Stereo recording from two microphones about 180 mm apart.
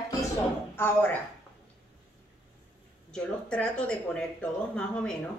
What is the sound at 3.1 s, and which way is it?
Speech, 5° left (ahead or behind).